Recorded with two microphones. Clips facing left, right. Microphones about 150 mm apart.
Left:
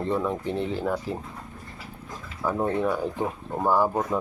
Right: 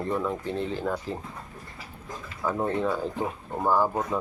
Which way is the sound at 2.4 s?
10° left (ahead or behind).